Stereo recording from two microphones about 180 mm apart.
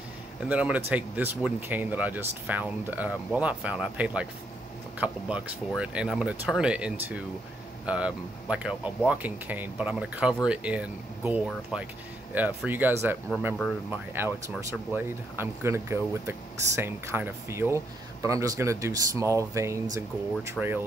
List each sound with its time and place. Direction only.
0.5 s speech: 10° right (ahead or behind)